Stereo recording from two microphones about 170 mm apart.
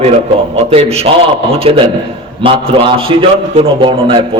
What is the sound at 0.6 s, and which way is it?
A man's voice, 35° right (ahead or behind).